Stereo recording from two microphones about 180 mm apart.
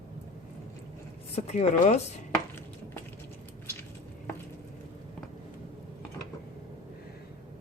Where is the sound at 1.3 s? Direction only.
40° left (ahead or behind).